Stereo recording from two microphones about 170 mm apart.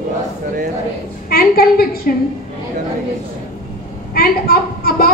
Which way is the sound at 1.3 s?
60° left (ahead or behind).